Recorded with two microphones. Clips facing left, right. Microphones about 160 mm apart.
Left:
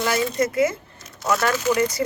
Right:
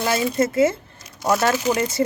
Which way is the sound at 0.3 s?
25° right (ahead or behind).